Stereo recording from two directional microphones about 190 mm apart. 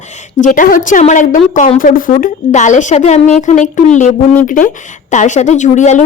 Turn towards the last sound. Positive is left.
turn(degrees=40)  # may be behind; listen again after turning